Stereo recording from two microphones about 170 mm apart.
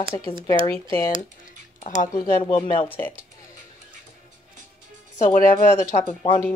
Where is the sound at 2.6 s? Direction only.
30° left (ahead or behind).